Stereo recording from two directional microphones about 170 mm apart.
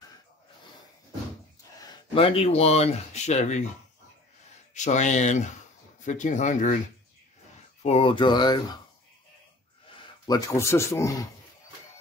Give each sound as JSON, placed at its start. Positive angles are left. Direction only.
{"t": 1.8, "sound": "speech", "side_deg": 30}
{"t": 4.7, "sound": "speech", "side_deg": 45}
{"t": 7.8, "sound": "speech", "side_deg": 35}
{"t": 9.8, "sound": "speech", "side_deg": 25}